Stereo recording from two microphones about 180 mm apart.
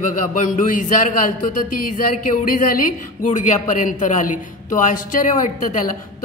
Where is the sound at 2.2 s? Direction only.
50° left (ahead or behind).